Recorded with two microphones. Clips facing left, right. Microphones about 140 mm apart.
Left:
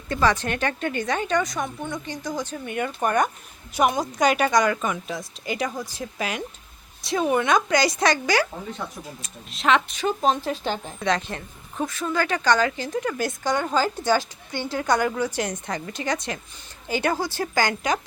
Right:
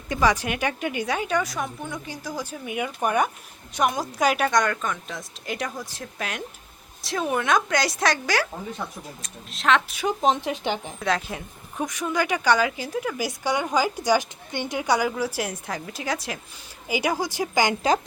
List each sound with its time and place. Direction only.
0.1 s a woman's voice: 10° right (ahead or behind)
10.0 s a woman's voice: 15° right (ahead or behind)
11.0 s a woman's voice: 5° right (ahead or behind)